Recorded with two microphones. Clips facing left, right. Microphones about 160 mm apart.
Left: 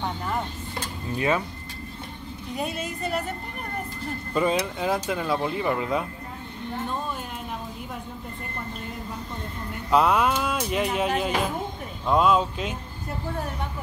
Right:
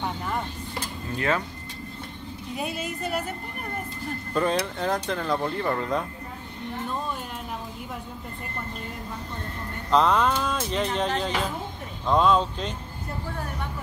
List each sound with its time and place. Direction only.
1.1 s speech: 15° left (ahead or behind)
2.5 s speech: centre (ahead or behind)
4.3 s speech: 5° left (ahead or behind)
9.8 s speech: 10° left (ahead or behind)